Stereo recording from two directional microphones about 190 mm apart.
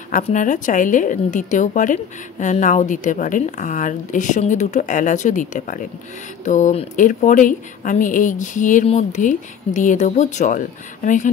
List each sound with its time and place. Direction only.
0.1 s a woman's voice: 40° left (ahead or behind)